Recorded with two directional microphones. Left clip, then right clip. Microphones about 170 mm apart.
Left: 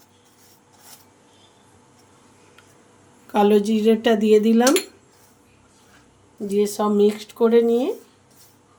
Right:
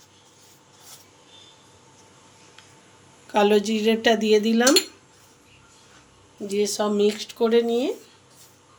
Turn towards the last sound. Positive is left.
turn(degrees=50)  # may be behind; listen again after turning